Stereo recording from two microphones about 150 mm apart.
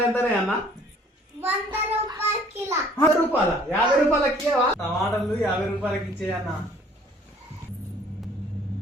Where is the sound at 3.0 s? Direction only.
15° left (ahead or behind).